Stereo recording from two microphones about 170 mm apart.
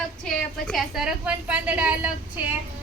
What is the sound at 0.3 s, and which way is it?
A woman's voice, centre (ahead or behind).